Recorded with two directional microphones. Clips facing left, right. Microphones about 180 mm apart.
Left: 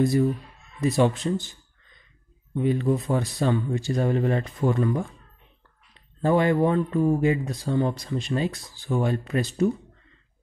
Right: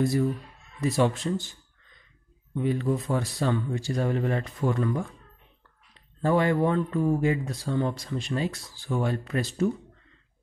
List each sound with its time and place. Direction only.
0.7 s speech: 20° left (ahead or behind)
2.5 s speech: 20° left (ahead or behind)